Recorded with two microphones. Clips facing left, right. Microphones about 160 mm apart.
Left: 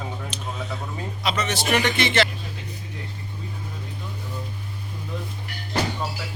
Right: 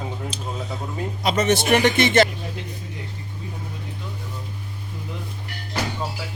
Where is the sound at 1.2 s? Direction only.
45° right (ahead or behind).